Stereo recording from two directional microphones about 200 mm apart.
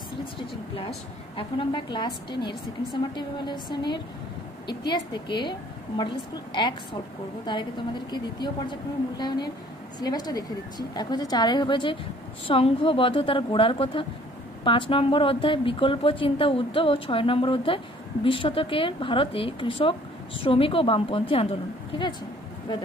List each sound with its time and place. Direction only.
0.7 s a woman's voice: 25° left (ahead or behind)
8.1 s speech: 20° left (ahead or behind)